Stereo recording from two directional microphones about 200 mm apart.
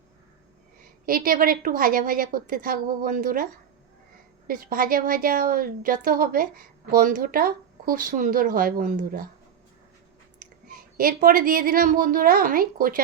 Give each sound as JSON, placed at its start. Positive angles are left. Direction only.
{"t": 1.0, "sound": "a woman's voice", "side_deg": -45}
{"t": 10.9, "sound": "a woman's voice", "side_deg": -45}